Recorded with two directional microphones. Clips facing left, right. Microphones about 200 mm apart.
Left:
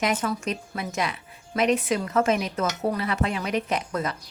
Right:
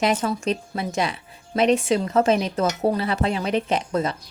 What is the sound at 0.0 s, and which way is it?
A woman's voice, 30° right (ahead or behind).